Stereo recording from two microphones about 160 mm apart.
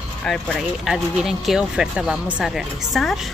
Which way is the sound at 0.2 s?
Centre (ahead or behind).